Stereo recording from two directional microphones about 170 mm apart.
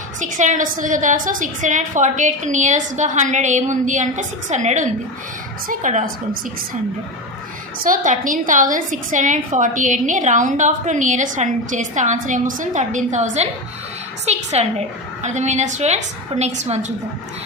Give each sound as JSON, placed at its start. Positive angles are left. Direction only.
{"t": 0.2, "sound": "a woman's voice", "side_deg": -45}
{"t": 7.8, "sound": "a woman's voice", "side_deg": -50}